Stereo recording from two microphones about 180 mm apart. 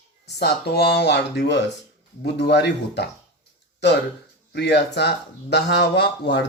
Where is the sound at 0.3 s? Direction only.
65° left (ahead or behind).